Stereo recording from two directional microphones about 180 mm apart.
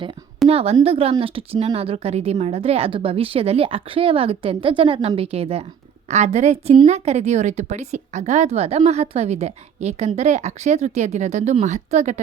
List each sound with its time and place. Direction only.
0.4 s a woman's voice: 35° right (ahead or behind)